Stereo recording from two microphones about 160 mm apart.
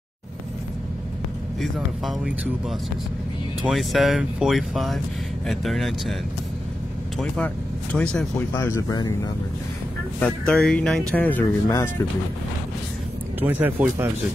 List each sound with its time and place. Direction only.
1.6 s speech: 5° right (ahead or behind)
3.6 s speech: centre (ahead or behind)
7.2 s speech: 5° left (ahead or behind)
8.5 s speech: 15° left (ahead or behind)
10.2 s speech: 5° left (ahead or behind)
11.6 s speech: 20° left (ahead or behind)
13.4 s speech: 10° right (ahead or behind)